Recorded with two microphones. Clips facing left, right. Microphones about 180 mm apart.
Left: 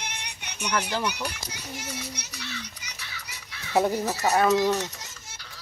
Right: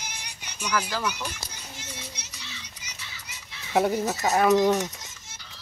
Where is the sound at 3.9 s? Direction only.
Centre (ahead or behind).